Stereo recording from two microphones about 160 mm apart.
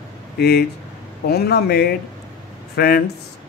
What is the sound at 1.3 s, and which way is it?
Speech, 80° left.